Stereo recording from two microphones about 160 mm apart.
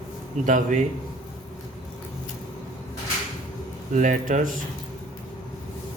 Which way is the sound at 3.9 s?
55° right (ahead or behind).